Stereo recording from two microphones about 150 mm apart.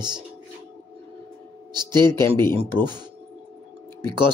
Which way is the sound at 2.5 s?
30° right (ahead or behind).